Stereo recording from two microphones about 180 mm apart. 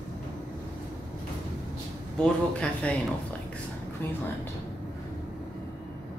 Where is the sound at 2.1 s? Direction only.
5° left (ahead or behind).